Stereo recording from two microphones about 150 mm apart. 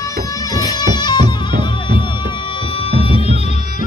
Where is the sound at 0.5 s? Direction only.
25° left (ahead or behind).